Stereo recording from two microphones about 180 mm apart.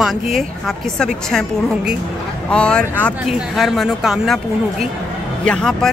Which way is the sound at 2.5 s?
5° left (ahead or behind).